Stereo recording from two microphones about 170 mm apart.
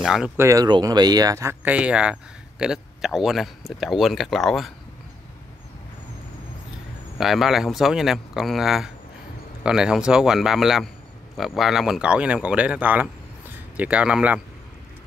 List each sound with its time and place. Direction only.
0.0 s speech: centre (ahead or behind)
0.4 s speech: 20° right (ahead or behind); by 4.7 s centre (ahead or behind)
7.2 s speech: centre (ahead or behind)